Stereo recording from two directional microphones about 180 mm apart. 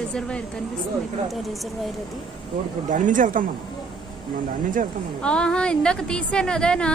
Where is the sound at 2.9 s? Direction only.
45° right (ahead or behind).